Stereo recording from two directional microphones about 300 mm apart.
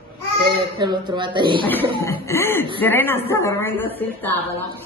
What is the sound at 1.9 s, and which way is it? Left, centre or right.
Speech, centre.